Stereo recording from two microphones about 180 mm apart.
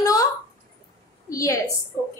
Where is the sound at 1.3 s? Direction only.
20° left (ahead or behind).